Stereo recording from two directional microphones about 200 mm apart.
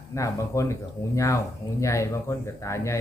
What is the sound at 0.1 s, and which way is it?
A man's voice, 15° left (ahead or behind).